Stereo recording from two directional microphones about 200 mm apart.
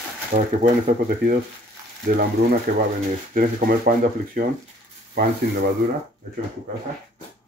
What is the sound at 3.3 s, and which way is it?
Speech, 45° right (ahead or behind).